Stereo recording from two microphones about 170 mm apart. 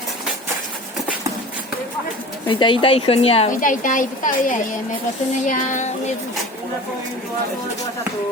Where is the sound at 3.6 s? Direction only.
50° left (ahead or behind).